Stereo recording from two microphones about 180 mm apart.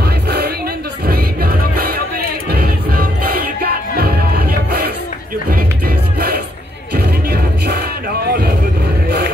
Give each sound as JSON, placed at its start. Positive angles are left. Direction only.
{"t": 0.0, "sound": "music", "side_deg": -65}